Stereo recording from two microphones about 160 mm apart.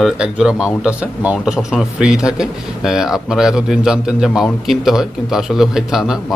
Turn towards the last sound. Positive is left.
turn(degrees=-5)  # may be behind; listen again after turning